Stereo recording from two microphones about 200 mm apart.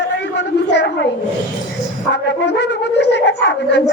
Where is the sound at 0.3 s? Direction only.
60° left (ahead or behind).